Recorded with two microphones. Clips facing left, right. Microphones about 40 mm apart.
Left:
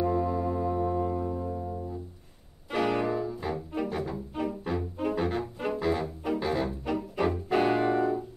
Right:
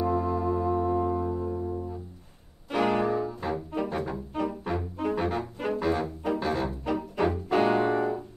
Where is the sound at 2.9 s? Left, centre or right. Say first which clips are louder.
Right 2 dB; centre.